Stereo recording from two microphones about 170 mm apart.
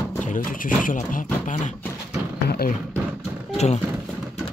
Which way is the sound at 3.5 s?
40° left (ahead or behind).